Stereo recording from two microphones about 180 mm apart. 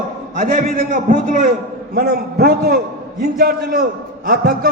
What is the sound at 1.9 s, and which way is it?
A man's voice, 60° right (ahead or behind).